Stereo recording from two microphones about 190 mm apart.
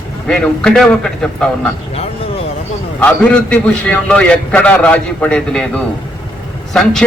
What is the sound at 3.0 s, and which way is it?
A man's voice, 5° left (ahead or behind).